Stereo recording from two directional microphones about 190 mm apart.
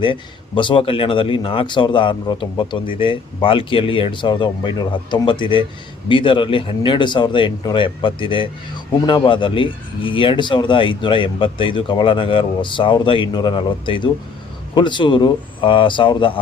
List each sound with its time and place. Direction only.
0.0 s speech: 25° left (ahead or behind)